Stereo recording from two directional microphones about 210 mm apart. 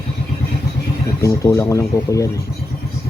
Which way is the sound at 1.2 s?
15° left (ahead or behind).